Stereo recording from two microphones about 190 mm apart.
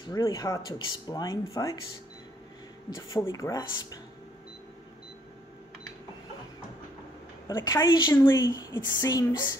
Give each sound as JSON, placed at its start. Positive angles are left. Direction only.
{"t": 0.1, "sound": "speech", "side_deg": 20}
{"t": 2.9, "sound": "speech", "side_deg": 15}
{"t": 7.4, "sound": "a woman's voice", "side_deg": 15}